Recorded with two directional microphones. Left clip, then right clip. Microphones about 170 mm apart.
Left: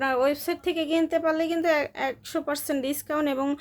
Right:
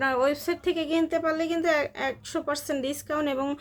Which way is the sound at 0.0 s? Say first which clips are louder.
Left 1 dB; 15° left (ahead or behind).